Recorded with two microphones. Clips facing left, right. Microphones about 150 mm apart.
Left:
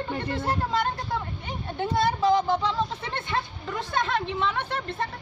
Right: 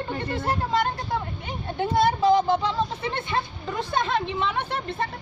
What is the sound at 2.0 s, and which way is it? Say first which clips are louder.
A woman's voice: right 3 dB; 15° right (ahead or behind).